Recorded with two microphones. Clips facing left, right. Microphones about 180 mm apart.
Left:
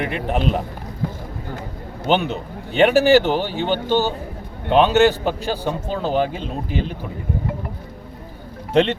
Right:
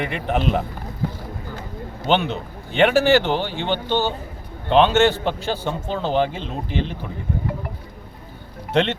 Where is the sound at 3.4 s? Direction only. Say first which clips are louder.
Left 3 dB; 40° left (ahead or behind).